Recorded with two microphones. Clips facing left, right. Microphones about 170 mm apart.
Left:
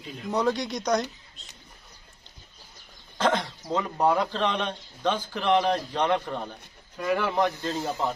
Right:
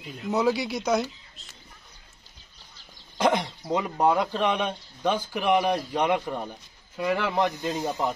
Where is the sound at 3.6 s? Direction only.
10° right (ahead or behind).